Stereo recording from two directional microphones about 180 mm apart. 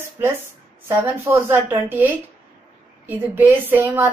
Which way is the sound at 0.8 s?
10° right (ahead or behind).